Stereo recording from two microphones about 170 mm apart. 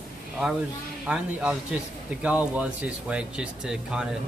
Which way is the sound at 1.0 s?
5° right (ahead or behind).